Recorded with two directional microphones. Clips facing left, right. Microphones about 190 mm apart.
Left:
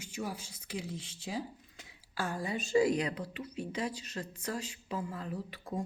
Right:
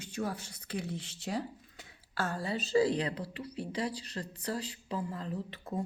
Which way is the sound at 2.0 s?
15° left (ahead or behind).